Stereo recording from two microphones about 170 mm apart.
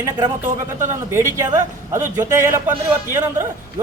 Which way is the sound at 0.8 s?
15° right (ahead or behind).